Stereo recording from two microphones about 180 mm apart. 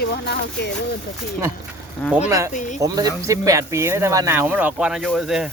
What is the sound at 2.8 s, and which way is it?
Speech, 20° right (ahead or behind).